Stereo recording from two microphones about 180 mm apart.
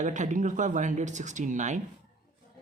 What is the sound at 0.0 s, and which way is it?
Speech, 45° right (ahead or behind).